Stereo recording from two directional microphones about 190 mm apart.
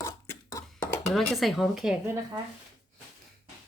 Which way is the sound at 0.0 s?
15° left (ahead or behind).